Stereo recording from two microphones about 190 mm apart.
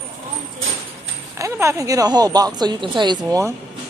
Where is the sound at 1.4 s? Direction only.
15° right (ahead or behind).